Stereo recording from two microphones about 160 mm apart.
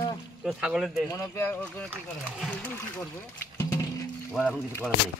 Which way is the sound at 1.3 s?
15° left (ahead or behind).